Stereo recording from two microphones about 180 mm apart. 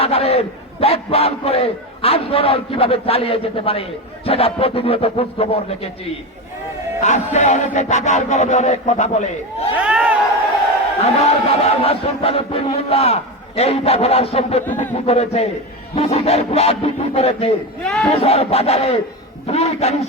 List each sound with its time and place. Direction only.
0.0 s a man's voice: 35° left (ahead or behind)
7.0 s a man's voice: 40° left (ahead or behind)
9.7 s speech: 5° right (ahead or behind)
11.0 s a man's voice: 35° left (ahead or behind)
17.8 s speech: centre (ahead or behind)
18.1 s a man's voice: 35° left (ahead or behind)